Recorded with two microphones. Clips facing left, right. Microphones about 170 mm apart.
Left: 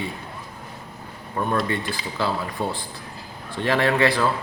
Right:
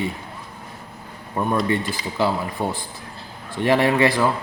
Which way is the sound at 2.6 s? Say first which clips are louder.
Right 2 dB; 15° right (ahead or behind).